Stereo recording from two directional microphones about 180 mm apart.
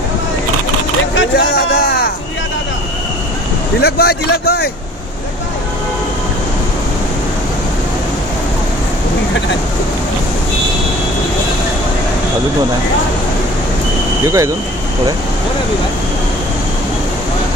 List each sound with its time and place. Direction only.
1.1 s a sound: 75° left (ahead or behind)
3.8 s a man's voice: 65° left (ahead or behind)
14.2 s speech: 15° right (ahead or behind)